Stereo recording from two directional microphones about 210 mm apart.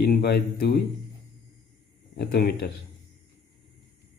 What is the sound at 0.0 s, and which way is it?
Speech, 50° left (ahead or behind).